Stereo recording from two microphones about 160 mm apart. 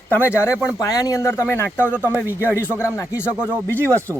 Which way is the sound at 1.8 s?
10° right (ahead or behind).